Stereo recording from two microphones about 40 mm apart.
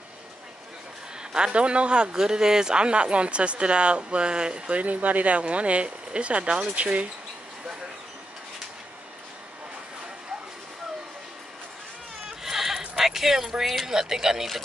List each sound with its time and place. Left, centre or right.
1.3 s a man's voice: right
12.3 s a sound: centre
13.8 s speech: centre